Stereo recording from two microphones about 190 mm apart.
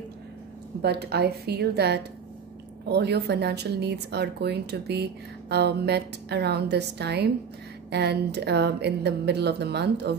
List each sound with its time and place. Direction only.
0.8 s a woman's voice: 60° right (ahead or behind)